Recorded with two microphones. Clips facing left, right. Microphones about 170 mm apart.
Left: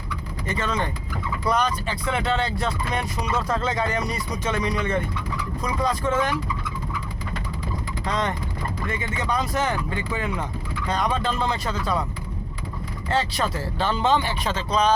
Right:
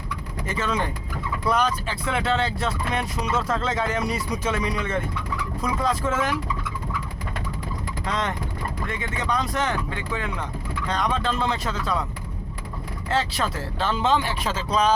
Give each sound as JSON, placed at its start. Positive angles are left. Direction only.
{"t": 0.4, "sound": "speech", "side_deg": -5}
{"t": 8.0, "sound": "speech", "side_deg": 0}
{"t": 13.1, "sound": "speech", "side_deg": 0}